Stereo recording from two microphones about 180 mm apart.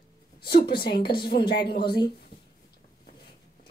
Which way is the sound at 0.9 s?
25° left (ahead or behind).